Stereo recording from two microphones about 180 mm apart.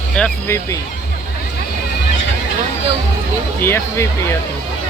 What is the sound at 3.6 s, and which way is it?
Speech, 15° left (ahead or behind).